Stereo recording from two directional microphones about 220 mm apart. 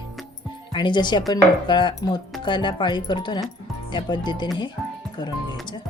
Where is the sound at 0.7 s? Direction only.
20° left (ahead or behind).